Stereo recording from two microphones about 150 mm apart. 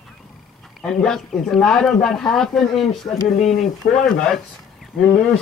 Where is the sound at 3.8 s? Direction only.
90° left.